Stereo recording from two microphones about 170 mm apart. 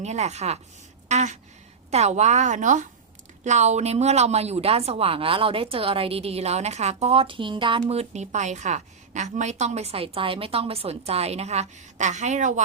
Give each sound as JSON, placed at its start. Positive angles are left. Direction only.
{"t": 0.0, "sound": "a woman's voice", "side_deg": -40}
{"t": 1.0, "sound": "a sound", "side_deg": -45}
{"t": 1.9, "sound": "a woman's voice", "side_deg": -40}